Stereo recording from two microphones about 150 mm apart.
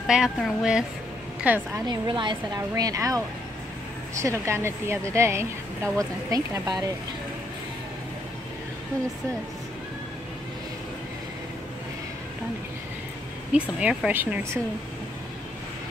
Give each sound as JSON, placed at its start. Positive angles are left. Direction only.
{"t": 0.0, "sound": "a woman's voice", "side_deg": -5}
{"t": 1.9, "sound": "a woman's voice", "side_deg": -30}
{"t": 13.5, "sound": "a woman's voice", "side_deg": -5}